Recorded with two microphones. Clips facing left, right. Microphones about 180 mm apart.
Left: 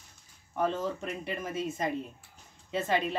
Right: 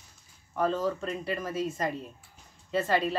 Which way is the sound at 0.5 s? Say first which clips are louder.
Right 2 dB; 20° left (ahead or behind).